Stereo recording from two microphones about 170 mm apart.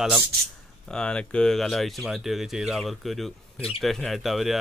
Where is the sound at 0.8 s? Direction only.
5° left (ahead or behind).